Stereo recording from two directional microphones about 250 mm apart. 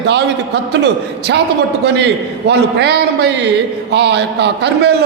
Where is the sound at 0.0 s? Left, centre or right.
Right.